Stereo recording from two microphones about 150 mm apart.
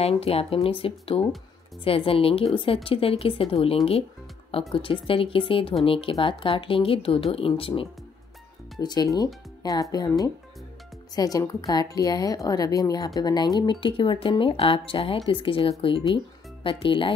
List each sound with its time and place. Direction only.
0.0 s speech: 40° left (ahead or behind)
8.7 s a woman's voice: 25° left (ahead or behind)